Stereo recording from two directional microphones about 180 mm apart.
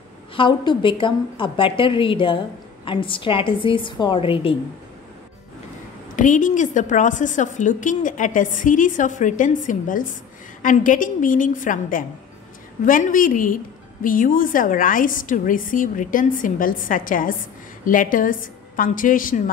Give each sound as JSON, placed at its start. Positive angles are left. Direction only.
{"t": 0.4, "sound": "a woman's voice", "side_deg": 25}
{"t": 6.1, "sound": "a woman's voice", "side_deg": 45}